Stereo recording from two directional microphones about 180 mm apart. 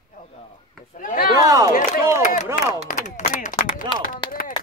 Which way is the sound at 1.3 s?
20° right (ahead or behind).